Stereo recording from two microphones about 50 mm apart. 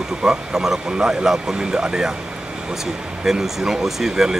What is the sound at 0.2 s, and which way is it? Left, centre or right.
Speech, centre.